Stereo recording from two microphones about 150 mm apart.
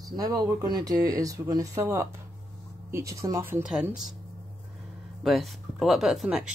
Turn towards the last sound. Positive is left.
turn(degrees=-5)  # may be behind; listen again after turning